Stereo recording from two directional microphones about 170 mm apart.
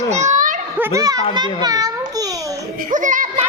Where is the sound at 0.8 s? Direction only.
15° right (ahead or behind).